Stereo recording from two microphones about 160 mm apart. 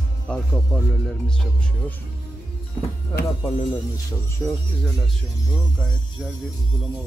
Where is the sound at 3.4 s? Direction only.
30° left (ahead or behind).